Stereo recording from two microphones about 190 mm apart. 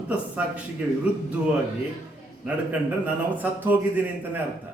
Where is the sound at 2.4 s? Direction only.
10° right (ahead or behind).